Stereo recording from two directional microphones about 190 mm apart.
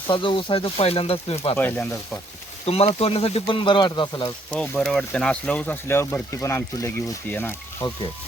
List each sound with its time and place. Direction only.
0.1 s speech: 25° left (ahead or behind)
1.5 s speech: 10° left (ahead or behind)
2.6 s speech: 30° left (ahead or behind)
4.5 s speech: 5° left (ahead or behind)